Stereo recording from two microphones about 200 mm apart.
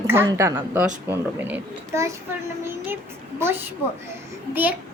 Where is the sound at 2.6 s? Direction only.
10° right (ahead or behind).